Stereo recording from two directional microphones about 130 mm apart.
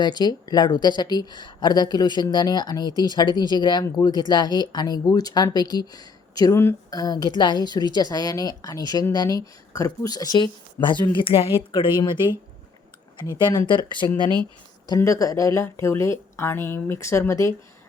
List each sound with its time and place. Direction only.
0.0 s speech: 35° left (ahead or behind)
14.8 s speech: 25° left (ahead or behind)